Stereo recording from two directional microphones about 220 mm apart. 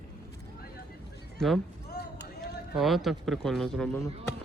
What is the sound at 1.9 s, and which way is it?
Basketball bounce, 50° left (ahead or behind).